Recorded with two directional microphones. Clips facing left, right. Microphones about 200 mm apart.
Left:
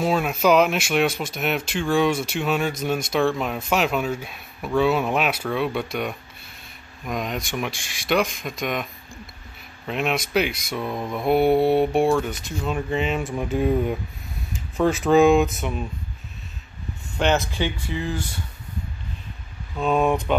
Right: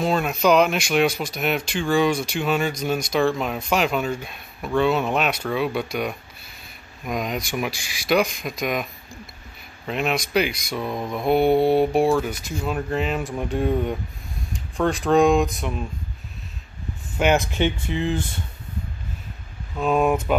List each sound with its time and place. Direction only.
0.0 s speech: 5° left (ahead or behind)
9.8 s speech: centre (ahead or behind)
17.2 s speech: 15° right (ahead or behind)
19.8 s speech: 5° right (ahead or behind)